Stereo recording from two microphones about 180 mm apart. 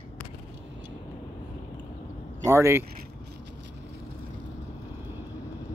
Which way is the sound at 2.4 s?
15° right (ahead or behind).